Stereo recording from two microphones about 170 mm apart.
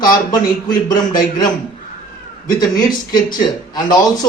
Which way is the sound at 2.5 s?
20° left (ahead or behind).